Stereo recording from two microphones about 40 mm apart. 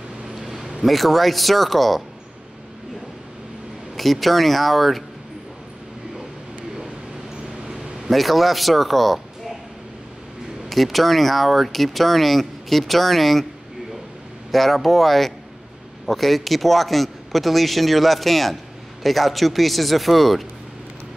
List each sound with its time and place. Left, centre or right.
0.4 s a sound: centre
0.8 s speech: centre
3.9 s speech: centre
7.6 s a sound: centre
8.1 s speech: centre
10.7 s speech: centre
14.5 s speech: centre